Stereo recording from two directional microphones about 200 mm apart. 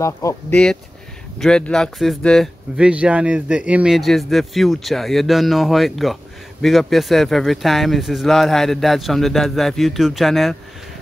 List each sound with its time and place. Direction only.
0.0 s speech: 15° left (ahead or behind)
1.4 s speech: 5° left (ahead or behind)